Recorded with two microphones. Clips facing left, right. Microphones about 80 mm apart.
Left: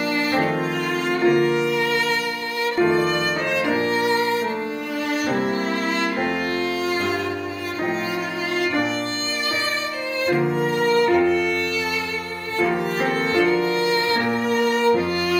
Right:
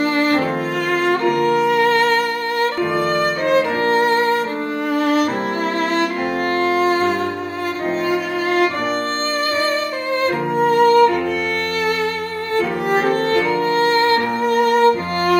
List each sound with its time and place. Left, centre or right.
0.0 s music: right
3.2 s violin: right
4.9 s music: right
6.5 s music: right
10.2 s music: right
12.5 s music: right